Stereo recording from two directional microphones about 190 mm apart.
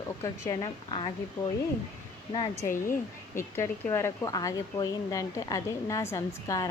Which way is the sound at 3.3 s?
15° left (ahead or behind).